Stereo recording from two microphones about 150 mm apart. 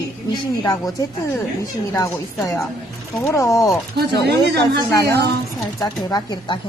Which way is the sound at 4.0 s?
90° right.